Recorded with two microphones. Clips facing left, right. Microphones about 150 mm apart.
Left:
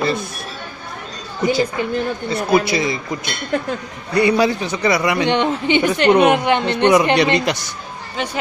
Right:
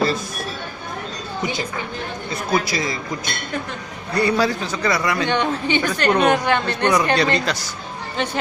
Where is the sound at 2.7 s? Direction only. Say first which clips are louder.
Left 5 dB; 25° left (ahead or behind).